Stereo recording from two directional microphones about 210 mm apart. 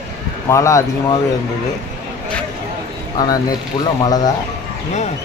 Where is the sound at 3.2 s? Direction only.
20° left (ahead or behind).